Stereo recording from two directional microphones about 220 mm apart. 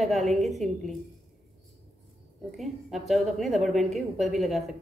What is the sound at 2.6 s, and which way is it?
A woman's voice, centre (ahead or behind).